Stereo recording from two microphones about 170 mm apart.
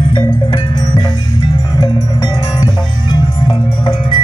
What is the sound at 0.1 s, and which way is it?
Music, 25° left (ahead or behind).